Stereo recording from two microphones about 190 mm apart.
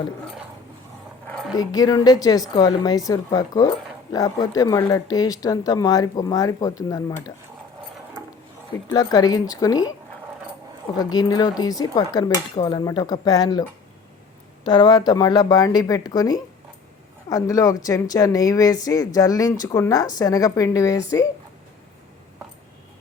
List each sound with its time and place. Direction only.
1.5 s speech: 20° left (ahead or behind)
8.9 s speech: 20° left (ahead or behind)
11.0 s speech: 20° left (ahead or behind)